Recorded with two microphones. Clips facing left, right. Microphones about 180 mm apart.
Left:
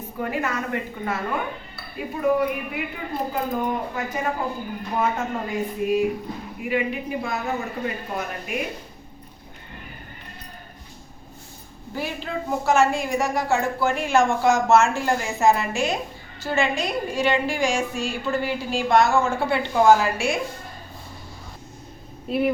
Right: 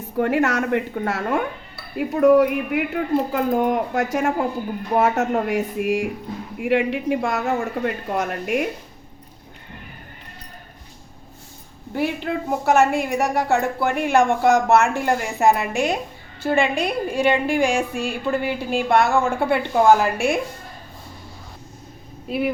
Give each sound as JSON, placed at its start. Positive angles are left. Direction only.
{"t": 0.2, "sound": "speech", "side_deg": -75}
{"t": 11.9, "sound": "a woman's voice", "side_deg": -60}
{"t": 22.3, "sound": "speech", "side_deg": 0}